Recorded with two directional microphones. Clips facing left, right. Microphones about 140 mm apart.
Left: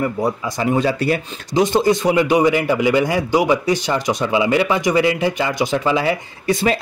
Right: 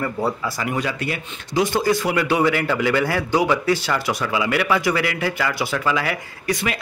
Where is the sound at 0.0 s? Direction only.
20° left (ahead or behind); by 1.2 s 35° left (ahead or behind).